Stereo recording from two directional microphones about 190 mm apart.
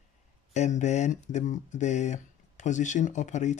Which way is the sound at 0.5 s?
35° left (ahead or behind).